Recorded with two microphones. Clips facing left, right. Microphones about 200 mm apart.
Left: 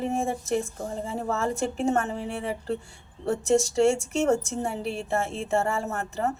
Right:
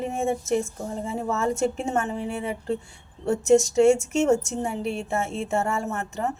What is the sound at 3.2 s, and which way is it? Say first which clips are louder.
Speech: right 4 dB; 35° left (ahead or behind).